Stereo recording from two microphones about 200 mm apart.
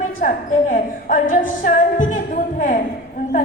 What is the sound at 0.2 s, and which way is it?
Music, 40° left (ahead or behind).